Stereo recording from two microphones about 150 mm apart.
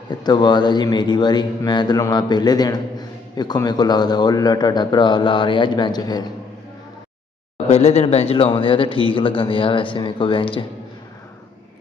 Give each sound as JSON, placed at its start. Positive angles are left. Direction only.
{"t": 0.2, "sound": "speech", "side_deg": 30}
{"t": 7.5, "sound": "speech", "side_deg": 45}